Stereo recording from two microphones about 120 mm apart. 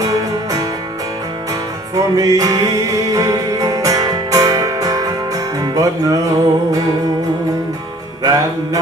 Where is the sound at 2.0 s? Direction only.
30° right (ahead or behind).